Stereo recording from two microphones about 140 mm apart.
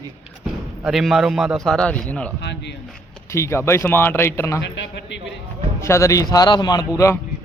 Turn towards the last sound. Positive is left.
turn(degrees=20)  # may be behind; listen again after turning